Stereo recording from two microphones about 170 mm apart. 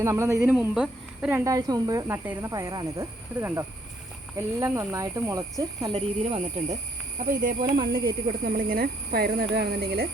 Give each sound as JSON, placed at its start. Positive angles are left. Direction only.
{"t": 0.0, "sound": "speech", "side_deg": -15}
{"t": 0.5, "sound": "speech", "side_deg": -5}
{"t": 5.9, "sound": "speech", "side_deg": -35}
{"t": 7.8, "sound": "speech", "side_deg": -60}